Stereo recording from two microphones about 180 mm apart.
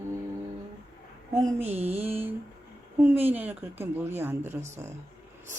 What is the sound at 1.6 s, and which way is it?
Mantra, 35° right (ahead or behind).